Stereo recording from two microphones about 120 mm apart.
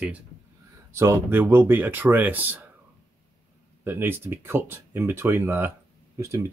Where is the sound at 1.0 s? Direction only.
20° right (ahead or behind).